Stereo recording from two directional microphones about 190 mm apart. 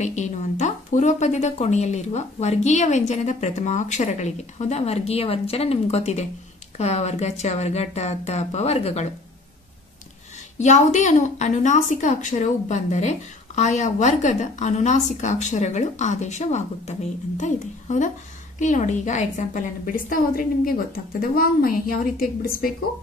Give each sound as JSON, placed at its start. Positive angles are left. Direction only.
{"t": 0.0, "sound": "a woman's voice", "side_deg": 40}
{"t": 10.6, "sound": "a woman's voice", "side_deg": 40}